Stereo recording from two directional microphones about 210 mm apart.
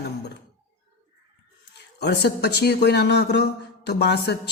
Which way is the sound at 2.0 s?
50° left (ahead or behind).